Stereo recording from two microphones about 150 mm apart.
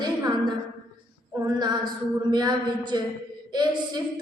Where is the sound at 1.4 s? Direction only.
30° right (ahead or behind).